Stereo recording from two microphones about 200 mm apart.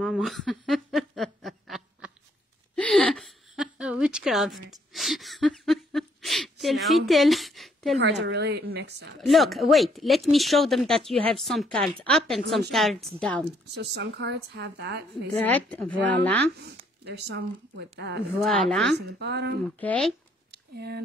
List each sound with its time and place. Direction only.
0.0 s a sound: centre (ahead or behind)
8.0 s a woman's voice: 60° right (ahead or behind)
9.2 s speech: centre (ahead or behind)
13.7 s a woman's voice: 55° right (ahead or behind)
15.3 s a woman's voice: 10° left (ahead or behind)
17.0 s a woman's voice: 55° right (ahead or behind)
18.4 s speech: centre (ahead or behind)
18.9 s a woman's voice: 55° right (ahead or behind)
19.8 s speech: 5° left (ahead or behind)
20.5 s a sound: 55° right (ahead or behind)